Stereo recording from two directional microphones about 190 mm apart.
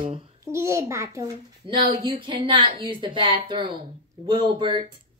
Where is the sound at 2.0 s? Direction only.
25° right (ahead or behind).